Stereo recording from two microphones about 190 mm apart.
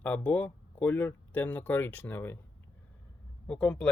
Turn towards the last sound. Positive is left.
turn(degrees=5)  # may be behind; listen again after turning